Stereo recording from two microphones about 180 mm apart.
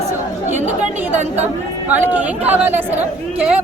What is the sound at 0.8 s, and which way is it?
Speech, 40° right (ahead or behind).